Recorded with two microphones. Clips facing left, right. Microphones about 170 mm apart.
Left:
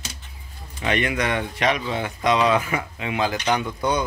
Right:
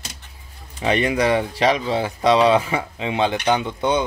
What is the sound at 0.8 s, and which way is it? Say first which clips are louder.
Speech: right 5 dB; 30° right (ahead or behind).